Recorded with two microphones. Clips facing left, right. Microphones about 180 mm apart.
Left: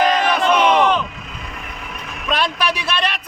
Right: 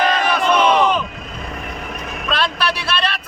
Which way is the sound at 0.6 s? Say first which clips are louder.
Even; 15° left (ahead or behind).